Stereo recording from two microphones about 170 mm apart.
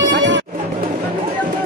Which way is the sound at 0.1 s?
90° right.